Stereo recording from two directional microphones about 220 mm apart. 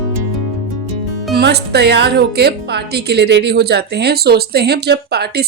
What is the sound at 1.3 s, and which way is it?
Speech, 50° right (ahead or behind).